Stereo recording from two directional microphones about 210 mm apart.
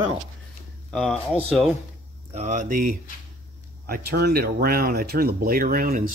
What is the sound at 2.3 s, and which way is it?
Speech, 35° right (ahead or behind).